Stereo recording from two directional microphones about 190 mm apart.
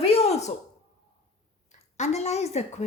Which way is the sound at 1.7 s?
35° left (ahead or behind).